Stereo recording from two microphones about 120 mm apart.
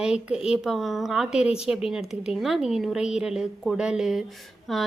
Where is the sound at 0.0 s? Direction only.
5° right (ahead or behind).